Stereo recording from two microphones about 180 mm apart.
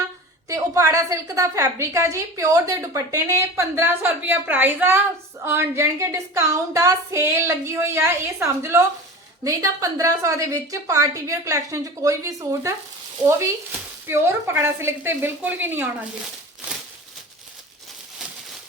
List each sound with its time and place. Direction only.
0.4 s a woman's voice: 15° right (ahead or behind)